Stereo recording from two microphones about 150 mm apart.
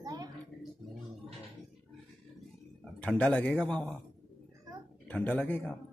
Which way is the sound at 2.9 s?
10° left (ahead or behind).